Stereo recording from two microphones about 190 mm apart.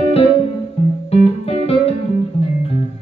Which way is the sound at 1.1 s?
30° left (ahead or behind).